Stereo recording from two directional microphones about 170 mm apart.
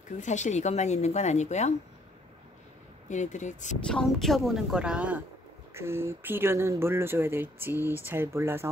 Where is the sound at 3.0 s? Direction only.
45° left (ahead or behind).